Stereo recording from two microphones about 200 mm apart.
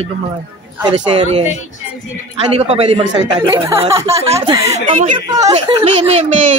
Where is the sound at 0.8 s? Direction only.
30° right (ahead or behind).